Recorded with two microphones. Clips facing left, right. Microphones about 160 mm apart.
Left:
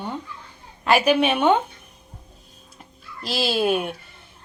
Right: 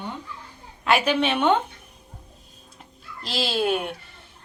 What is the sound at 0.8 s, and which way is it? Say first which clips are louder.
Speech: left 3 dB; 5° left (ahead or behind).